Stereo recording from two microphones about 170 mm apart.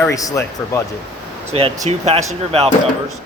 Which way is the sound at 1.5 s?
35° right (ahead or behind).